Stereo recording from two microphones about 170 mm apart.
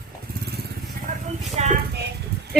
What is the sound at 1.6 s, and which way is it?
Speech, 40° right (ahead or behind).